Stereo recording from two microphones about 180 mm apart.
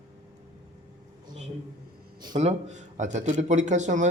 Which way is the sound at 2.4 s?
40° right (ahead or behind).